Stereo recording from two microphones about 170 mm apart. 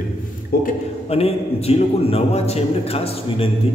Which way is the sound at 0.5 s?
60° left (ahead or behind).